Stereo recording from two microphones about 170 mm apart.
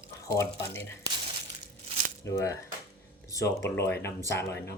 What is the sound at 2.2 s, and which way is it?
Speech, 20° left (ahead or behind).